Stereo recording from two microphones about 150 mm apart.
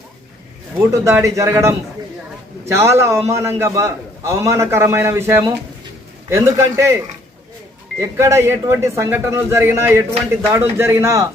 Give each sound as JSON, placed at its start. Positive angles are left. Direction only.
{"t": 0.8, "sound": "a man's voice", "side_deg": -20}
{"t": 8.0, "sound": "a man's voice", "side_deg": -20}